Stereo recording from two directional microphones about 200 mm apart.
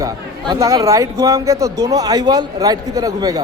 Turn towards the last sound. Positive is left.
turn(degrees=-15)  # may be behind; listen again after turning